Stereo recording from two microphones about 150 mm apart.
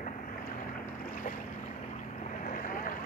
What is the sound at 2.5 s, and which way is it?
Boat, 65° left (ahead or behind).